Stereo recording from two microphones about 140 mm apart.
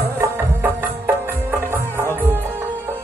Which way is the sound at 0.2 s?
15° right (ahead or behind).